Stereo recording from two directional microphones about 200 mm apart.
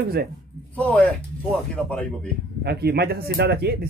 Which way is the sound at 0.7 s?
5° left (ahead or behind).